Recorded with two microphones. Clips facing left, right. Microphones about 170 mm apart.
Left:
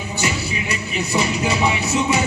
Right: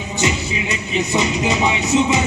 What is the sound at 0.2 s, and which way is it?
Music, 20° right (ahead or behind).